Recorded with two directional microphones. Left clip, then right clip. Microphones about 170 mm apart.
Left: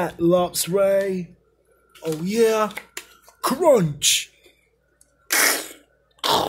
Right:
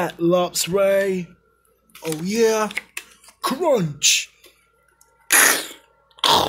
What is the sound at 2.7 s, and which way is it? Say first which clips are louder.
Speech: right 5 dB; 10° left (ahead or behind).